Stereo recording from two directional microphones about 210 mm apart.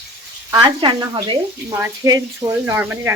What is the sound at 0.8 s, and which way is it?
Speech, 20° right (ahead or behind).